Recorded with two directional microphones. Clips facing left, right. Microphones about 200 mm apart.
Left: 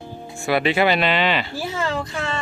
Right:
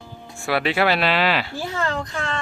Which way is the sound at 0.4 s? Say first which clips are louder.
Left 2 dB; centre (ahead or behind).